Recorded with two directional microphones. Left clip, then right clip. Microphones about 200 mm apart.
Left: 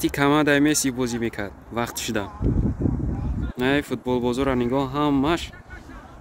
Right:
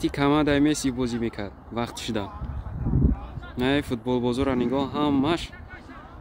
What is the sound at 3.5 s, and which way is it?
Speech, centre (ahead or behind).